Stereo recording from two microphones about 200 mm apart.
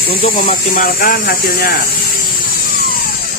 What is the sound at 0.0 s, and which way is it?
Speech, 45° left (ahead or behind).